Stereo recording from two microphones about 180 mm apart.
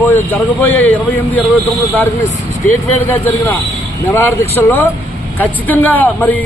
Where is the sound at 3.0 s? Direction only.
15° left (ahead or behind).